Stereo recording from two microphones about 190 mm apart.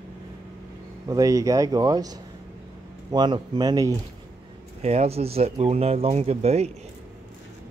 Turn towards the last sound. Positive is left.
turn(degrees=-35)  # may be behind; listen again after turning